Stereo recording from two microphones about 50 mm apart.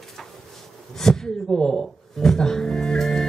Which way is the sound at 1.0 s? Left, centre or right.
Centre.